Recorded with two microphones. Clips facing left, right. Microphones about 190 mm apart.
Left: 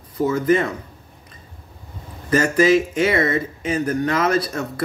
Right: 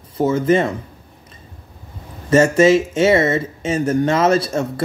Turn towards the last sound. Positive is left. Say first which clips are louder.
# right 3 dB
turn(degrees=-25)  # may be behind; listen again after turning